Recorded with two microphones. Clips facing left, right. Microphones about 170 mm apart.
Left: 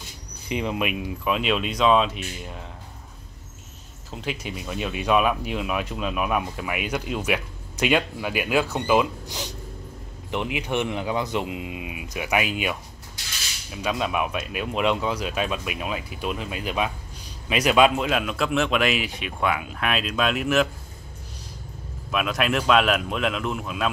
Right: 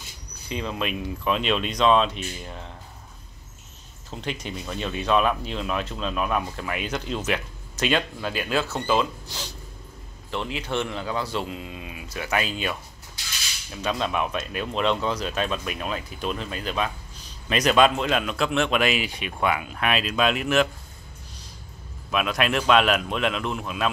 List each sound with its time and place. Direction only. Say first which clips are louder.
0.5 s speech: left 3 dB; 15° left (ahead or behind)
4.1 s speech: left 1 dB; 5° left (ahead or behind)
13.7 s speech: left 1 dB; 10° left (ahead or behind)
22.1 s speech: even; centre (ahead or behind)